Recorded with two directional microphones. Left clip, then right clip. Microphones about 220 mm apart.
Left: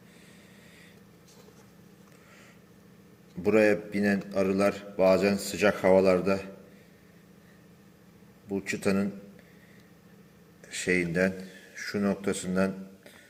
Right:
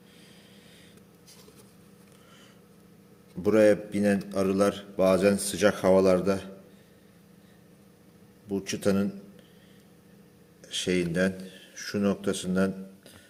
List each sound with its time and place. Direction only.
3.4 s a man's voice: 35° right (ahead or behind)
8.7 s a man's voice: 35° right (ahead or behind)
10.8 s a man's voice: 35° right (ahead or behind)